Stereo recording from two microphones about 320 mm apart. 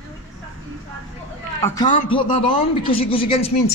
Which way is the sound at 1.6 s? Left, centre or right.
Centre.